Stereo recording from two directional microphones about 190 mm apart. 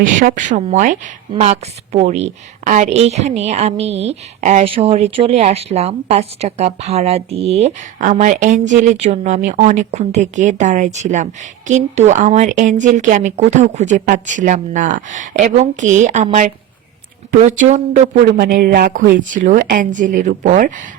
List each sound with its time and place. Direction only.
0.2 s a woman's voice: 40° right (ahead or behind)
18.3 s a woman's voice: 50° right (ahead or behind)